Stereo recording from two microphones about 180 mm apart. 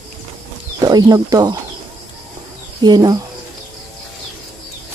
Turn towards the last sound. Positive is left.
turn(degrees=-20)  # may be behind; listen again after turning